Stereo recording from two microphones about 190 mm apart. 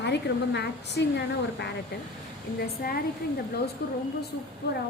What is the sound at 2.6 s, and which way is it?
A woman's voice, 50° left (ahead or behind).